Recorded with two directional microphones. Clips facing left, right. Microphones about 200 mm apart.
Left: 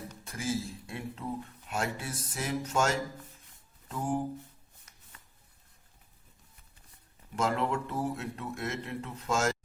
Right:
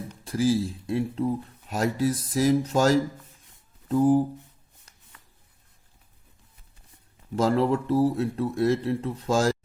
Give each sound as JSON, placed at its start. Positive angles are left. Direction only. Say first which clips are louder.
{"t": 0.3, "sound": "speech", "louder": "right 11 dB", "side_deg": -35}
{"t": 7.3, "sound": "speech", "louder": "right 8 dB", "side_deg": -35}